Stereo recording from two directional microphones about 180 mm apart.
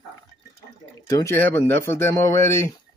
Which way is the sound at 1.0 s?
15° left (ahead or behind).